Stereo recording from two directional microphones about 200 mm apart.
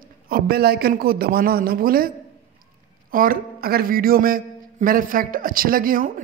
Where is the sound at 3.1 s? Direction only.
45° right (ahead or behind).